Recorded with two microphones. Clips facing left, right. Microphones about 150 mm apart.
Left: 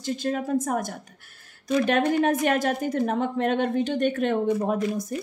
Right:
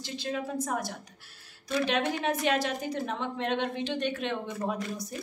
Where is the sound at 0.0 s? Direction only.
50° left (ahead or behind).